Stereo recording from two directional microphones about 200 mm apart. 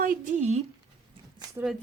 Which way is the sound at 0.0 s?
40° right (ahead or behind).